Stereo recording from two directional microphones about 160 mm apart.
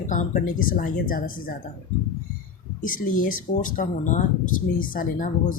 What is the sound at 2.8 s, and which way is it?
Speech, 55° left (ahead or behind).